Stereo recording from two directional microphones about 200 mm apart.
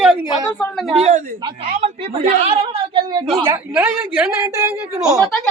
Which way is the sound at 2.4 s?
30° right (ahead or behind).